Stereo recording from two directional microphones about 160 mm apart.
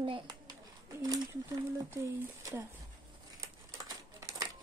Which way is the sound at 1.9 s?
15° right (ahead or behind).